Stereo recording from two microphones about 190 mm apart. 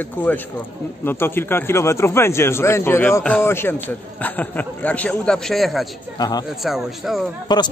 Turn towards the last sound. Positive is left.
turn(degrees=25)  # may be behind; listen again after turning